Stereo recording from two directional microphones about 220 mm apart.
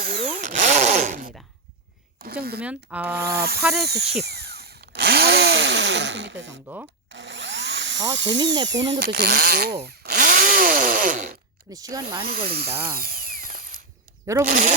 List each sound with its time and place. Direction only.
0.0 s power tool: 40° right (ahead or behind)
2.2 s a sound: 45° right (ahead or behind)
2.6 s speech: 5° right (ahead or behind)
3.2 s speech: 45° right (ahead or behind)
3.8 s drill: 45° right (ahead or behind)
11.7 s speech: 15° right (ahead or behind)
12.5 s speech: 45° right (ahead or behind)
12.9 s ratchet: 40° right (ahead or behind)
14.4 s speech: 35° right (ahead or behind)